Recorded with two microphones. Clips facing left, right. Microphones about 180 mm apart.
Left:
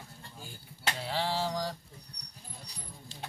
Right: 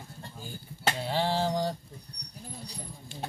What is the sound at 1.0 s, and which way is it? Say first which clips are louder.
Mantra: right 3 dB; 30° right (ahead or behind).